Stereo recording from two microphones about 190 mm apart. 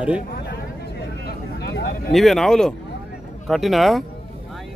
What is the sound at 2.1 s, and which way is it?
Speech, centre (ahead or behind).